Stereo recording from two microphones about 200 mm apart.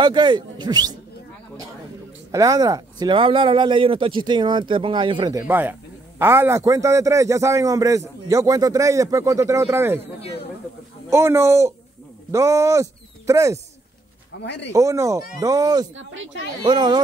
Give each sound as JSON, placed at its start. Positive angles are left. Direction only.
{"t": 0.0, "sound": "speech", "side_deg": -20}
{"t": 2.3, "sound": "speech", "side_deg": -15}
{"t": 5.5, "sound": "a man's voice", "side_deg": -10}
{"t": 11.1, "sound": "a man's voice", "side_deg": -15}
{"t": 14.4, "sound": "speech", "side_deg": 60}
{"t": 14.7, "sound": "a man's voice", "side_deg": -15}
{"t": 15.9, "sound": "speech", "side_deg": -70}
{"t": 16.6, "sound": "speech", "side_deg": -20}